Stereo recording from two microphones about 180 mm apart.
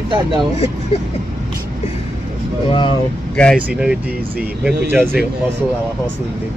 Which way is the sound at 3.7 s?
5° right (ahead or behind).